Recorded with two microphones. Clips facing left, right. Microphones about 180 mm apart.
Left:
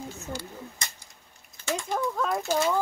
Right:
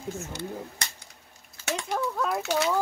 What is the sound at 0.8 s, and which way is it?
Cap gun, 70° right (ahead or behind).